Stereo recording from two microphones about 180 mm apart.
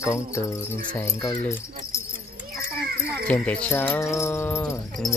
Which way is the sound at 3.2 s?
5° left (ahead or behind).